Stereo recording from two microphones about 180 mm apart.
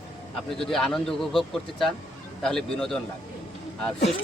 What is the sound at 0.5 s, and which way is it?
Speech, centre (ahead or behind).